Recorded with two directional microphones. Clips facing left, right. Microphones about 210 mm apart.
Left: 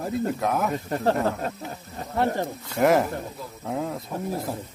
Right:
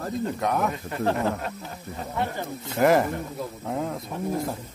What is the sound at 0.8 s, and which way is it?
Speech, 40° left (ahead or behind).